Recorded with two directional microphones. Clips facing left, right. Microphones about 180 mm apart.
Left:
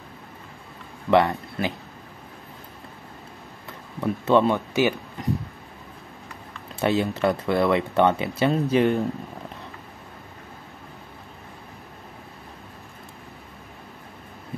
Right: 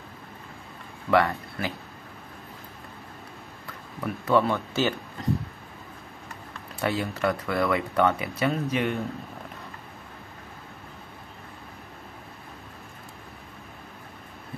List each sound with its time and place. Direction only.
1.1 s speech: 20° left (ahead or behind)
4.0 s speech: 25° left (ahead or behind)
5.2 s a sound: 15° left (ahead or behind)
6.8 s speech: 25° left (ahead or behind)